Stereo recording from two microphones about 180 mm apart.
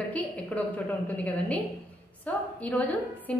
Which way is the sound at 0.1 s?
10° left (ahead or behind).